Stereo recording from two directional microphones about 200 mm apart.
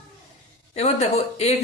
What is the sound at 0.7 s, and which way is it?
Speech, 35° left (ahead or behind).